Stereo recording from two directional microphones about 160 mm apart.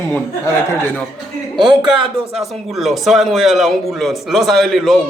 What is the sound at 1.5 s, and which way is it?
Speech, 30° right (ahead or behind).